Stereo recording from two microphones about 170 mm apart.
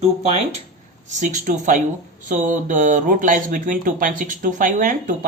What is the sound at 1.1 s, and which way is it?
Speech, 45° right (ahead or behind).